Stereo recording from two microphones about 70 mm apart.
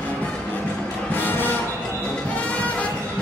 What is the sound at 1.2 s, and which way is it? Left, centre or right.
Music, left.